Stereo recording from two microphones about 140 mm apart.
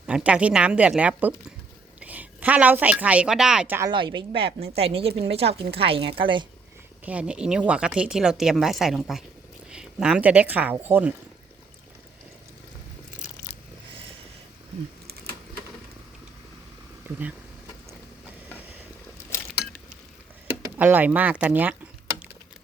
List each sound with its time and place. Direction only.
0.0 s a woman's voice: 10° right (ahead or behind)
3.9 s a woman's voice: 35° right (ahead or behind)
7.0 s speech: 10° right (ahead or behind)
15.0 s a sound: 90° right
20.7 s a woman's voice: 10° right (ahead or behind)